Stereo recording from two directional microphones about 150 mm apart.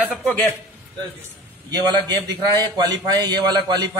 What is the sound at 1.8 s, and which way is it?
A man's voice, 25° right (ahead or behind).